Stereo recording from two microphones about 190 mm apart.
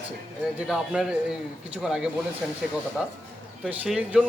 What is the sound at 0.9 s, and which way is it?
A man's voice, 5° right (ahead or behind).